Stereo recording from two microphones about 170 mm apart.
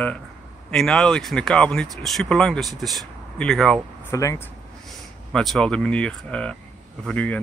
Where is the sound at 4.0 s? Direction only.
15° left (ahead or behind).